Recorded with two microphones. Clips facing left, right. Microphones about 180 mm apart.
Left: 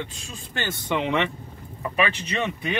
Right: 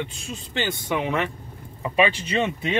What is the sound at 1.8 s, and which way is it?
Speech, 25° right (ahead or behind).